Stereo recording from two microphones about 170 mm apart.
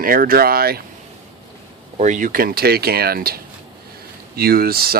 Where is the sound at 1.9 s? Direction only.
45° right (ahead or behind).